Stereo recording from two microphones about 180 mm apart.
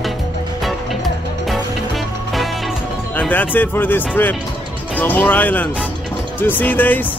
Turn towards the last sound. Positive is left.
turn(degrees=10)  # may be behind; listen again after turning